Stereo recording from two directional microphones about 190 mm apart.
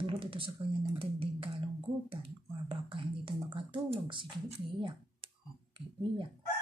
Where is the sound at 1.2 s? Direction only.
30° right (ahead or behind).